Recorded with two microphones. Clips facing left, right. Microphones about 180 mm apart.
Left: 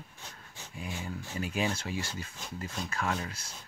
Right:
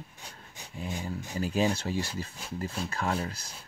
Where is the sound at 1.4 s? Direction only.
35° right (ahead or behind).